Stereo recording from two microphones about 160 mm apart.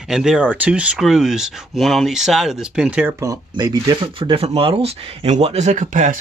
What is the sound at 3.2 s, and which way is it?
Speech, 25° right (ahead or behind).